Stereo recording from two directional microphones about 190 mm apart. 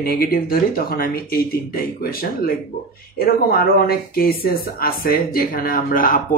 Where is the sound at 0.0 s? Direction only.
50° left (ahead or behind).